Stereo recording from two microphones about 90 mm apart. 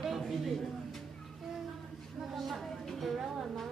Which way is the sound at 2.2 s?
Centre (ahead or behind).